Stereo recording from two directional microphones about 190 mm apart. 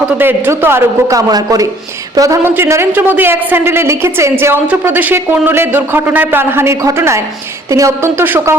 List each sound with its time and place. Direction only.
0.2 s speech: 10° right (ahead or behind)